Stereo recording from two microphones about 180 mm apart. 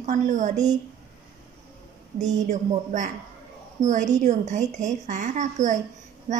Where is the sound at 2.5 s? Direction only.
45° right (ahead or behind).